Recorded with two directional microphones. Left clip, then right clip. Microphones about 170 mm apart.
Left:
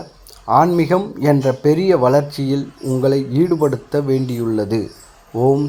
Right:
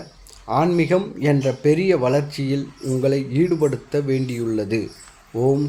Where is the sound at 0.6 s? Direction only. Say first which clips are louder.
Left 4 dB; 10° left (ahead or behind).